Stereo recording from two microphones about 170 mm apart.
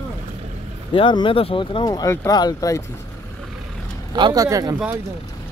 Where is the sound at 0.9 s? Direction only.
30° left (ahead or behind).